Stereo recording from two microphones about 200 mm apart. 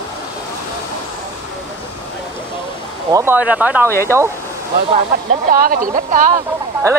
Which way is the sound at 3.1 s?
15° right (ahead or behind).